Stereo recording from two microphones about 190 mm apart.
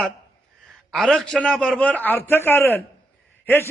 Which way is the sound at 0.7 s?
Centre (ahead or behind).